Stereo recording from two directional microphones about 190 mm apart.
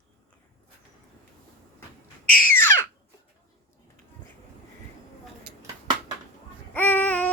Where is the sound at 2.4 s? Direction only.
10° left (ahead or behind).